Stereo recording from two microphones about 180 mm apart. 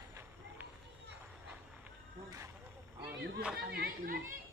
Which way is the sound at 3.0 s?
65° right (ahead or behind).